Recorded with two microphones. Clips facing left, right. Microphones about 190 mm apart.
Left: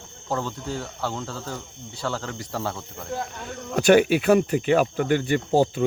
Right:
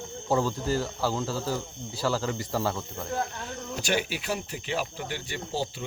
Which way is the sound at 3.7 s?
60° left (ahead or behind).